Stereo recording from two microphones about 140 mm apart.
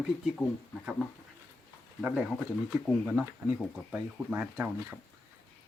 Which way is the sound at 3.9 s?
15° right (ahead or behind).